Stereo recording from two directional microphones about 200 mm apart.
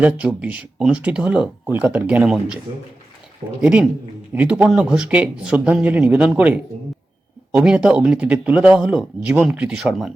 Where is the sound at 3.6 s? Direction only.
5° right (ahead or behind).